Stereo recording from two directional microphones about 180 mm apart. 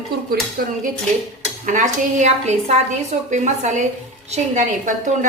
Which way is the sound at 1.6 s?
45° right (ahead or behind).